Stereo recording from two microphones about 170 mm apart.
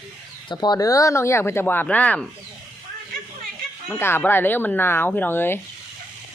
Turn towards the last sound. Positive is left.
turn(degrees=15)  # may be behind; listen again after turning